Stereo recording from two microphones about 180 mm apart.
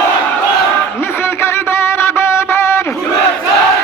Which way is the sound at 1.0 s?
15° left (ahead or behind).